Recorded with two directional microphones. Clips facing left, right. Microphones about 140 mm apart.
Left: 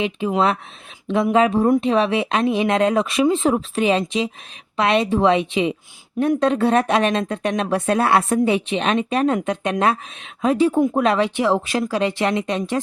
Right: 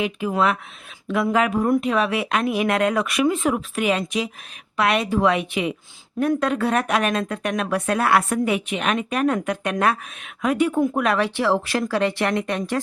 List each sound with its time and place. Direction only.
0.0 s speech: 25° left (ahead or behind)